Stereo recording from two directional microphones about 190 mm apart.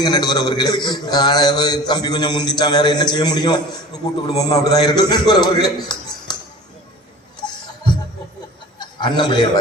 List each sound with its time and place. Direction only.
0.0 s a man's voice: 20° left (ahead or behind)
8.8 s a man's voice: 25° left (ahead or behind)